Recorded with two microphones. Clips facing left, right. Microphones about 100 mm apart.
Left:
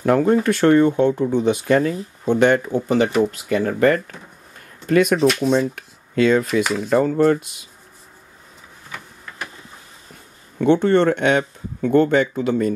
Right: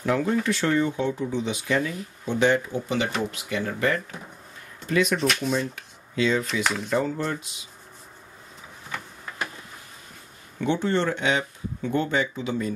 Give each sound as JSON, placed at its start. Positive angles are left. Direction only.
{"t": 0.0, "sound": "speech", "side_deg": 50}
{"t": 2.2, "sound": "speech", "side_deg": 55}
{"t": 5.2, "sound": "speech", "side_deg": 0}
{"t": 5.6, "sound": "speech", "side_deg": 55}
{"t": 6.6, "sound": "speech", "side_deg": 0}
{"t": 6.9, "sound": "speech", "side_deg": 50}
{"t": 10.6, "sound": "speech", "side_deg": 55}